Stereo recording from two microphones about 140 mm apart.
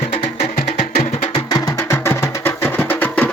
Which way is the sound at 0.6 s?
55° left (ahead or behind).